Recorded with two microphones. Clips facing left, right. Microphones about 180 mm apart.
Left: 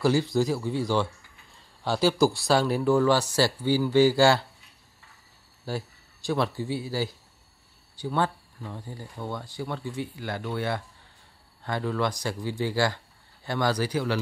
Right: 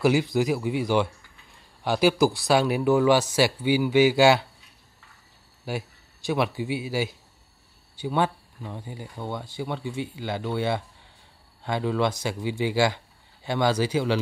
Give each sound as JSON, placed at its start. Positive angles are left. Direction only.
{"t": 0.0, "sound": "speech", "side_deg": -15}
{"t": 5.7, "sound": "speech", "side_deg": -20}